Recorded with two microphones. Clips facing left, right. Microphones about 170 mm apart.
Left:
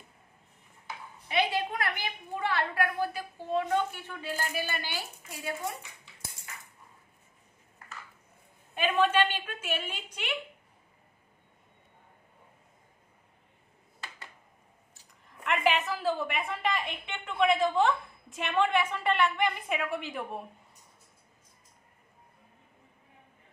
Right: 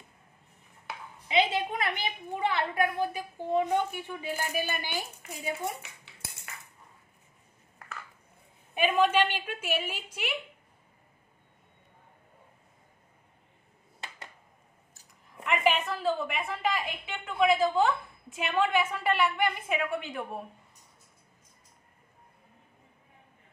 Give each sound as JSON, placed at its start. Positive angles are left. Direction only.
{"t": 1.3, "sound": "a sound", "side_deg": -20}
{"t": 8.7, "sound": "a woman's voice", "side_deg": -10}
{"t": 15.2, "sound": "a woman's voice", "side_deg": 0}